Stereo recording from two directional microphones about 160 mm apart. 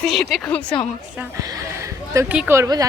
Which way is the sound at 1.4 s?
20° right (ahead or behind).